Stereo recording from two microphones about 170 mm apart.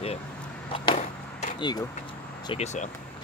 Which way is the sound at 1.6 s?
25° left (ahead or behind).